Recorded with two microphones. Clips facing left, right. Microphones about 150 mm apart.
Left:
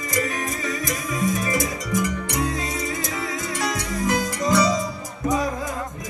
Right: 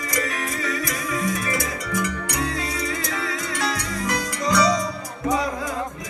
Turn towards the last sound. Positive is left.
turn(degrees=20)  # may be behind; listen again after turning